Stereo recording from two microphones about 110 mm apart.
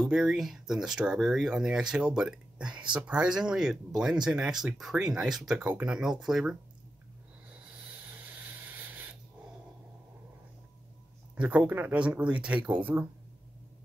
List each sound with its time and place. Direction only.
0.0 s speech: 5° right (ahead or behind)
8.2 s a sound: 15° right (ahead or behind)
11.3 s speech: 10° right (ahead or behind)